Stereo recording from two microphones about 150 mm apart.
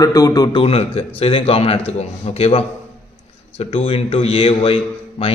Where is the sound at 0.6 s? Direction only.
40° left (ahead or behind).